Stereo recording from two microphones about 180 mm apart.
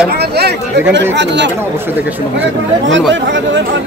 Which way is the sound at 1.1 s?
75° right (ahead or behind).